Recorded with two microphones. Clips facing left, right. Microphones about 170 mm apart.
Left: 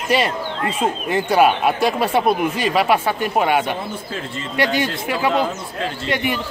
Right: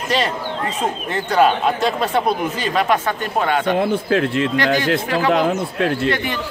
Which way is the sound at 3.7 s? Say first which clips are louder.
Right 10 dB; 70° right (ahead or behind).